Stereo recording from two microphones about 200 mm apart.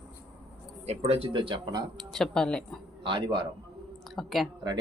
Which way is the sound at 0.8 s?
30° right (ahead or behind).